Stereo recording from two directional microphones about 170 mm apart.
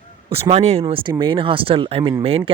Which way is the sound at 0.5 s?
35° right (ahead or behind).